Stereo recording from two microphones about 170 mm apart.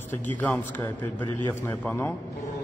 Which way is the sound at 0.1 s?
10° left (ahead or behind).